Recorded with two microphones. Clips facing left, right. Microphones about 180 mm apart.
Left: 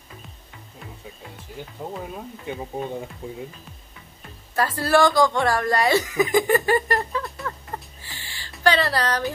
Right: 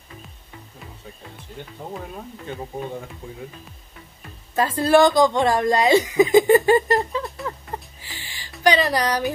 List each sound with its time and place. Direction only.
1.6 s speech: 10° left (ahead or behind)
4.6 s speech: 20° right (ahead or behind)
8.0 s a sound: 15° right (ahead or behind)